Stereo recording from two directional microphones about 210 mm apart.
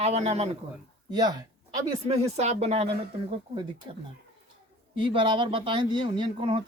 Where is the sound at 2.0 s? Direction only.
30° right (ahead or behind).